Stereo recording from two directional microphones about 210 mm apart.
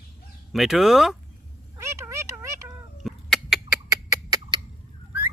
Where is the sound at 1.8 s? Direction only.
15° right (ahead or behind).